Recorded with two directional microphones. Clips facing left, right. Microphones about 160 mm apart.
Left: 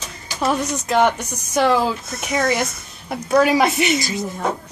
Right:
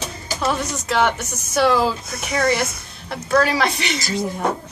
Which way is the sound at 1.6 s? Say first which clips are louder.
Even; 5° right (ahead or behind).